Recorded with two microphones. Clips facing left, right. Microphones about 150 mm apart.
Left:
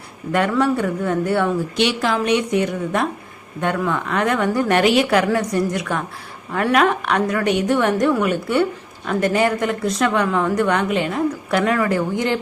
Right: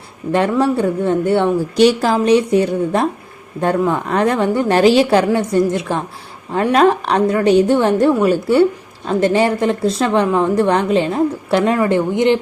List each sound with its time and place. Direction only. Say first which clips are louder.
0.3 s a woman's voice: right 3 dB; 25° right (ahead or behind)
1.7 s a woman's voice: right 7 dB; 40° right (ahead or behind); by 12.4 s 20° right (ahead or behind)